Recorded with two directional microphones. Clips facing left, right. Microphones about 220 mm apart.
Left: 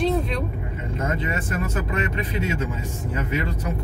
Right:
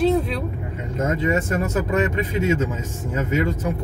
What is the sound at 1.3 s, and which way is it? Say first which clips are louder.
Speech: right 6 dB; 45° right (ahead or behind).